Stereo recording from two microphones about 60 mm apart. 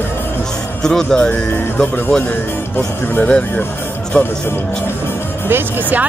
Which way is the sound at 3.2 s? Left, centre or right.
Left.